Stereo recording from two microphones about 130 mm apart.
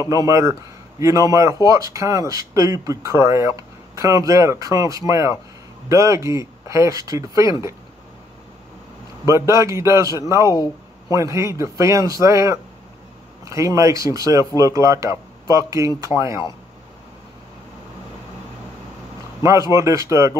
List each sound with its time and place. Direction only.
0.0 s speech: 25° right (ahead or behind)
9.2 s speech: 25° right (ahead or behind)
19.7 s speech: 25° right (ahead or behind)